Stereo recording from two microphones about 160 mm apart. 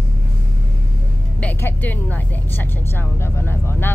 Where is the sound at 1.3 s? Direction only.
10° left (ahead or behind).